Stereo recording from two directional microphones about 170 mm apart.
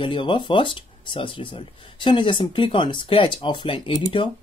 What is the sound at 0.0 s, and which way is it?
Speech, 30° left (ahead or behind).